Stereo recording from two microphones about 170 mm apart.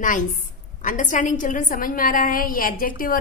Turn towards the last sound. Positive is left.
turn(degrees=55)  # may be behind; listen again after turning